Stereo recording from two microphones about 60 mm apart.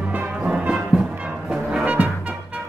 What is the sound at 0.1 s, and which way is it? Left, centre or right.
Music, right.